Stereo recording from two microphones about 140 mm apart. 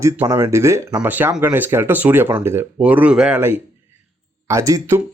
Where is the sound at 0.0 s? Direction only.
20° right (ahead or behind).